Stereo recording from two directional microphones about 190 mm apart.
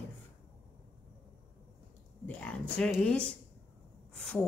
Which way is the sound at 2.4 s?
5° left (ahead or behind).